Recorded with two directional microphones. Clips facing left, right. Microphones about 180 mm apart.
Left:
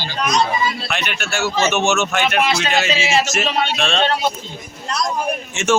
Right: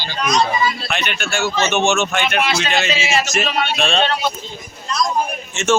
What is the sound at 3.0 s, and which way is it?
Speech, 35° left (ahead or behind).